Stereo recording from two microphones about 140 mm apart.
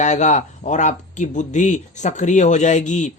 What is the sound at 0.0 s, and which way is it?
Speech, 60° left (ahead or behind).